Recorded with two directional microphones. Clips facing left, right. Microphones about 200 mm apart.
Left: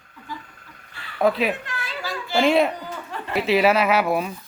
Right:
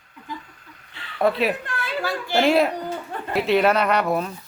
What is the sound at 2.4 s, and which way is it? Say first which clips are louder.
Speech: even; centre (ahead or behind).